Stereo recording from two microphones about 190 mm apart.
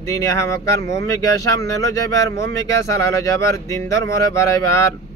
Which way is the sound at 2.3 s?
15° left (ahead or behind).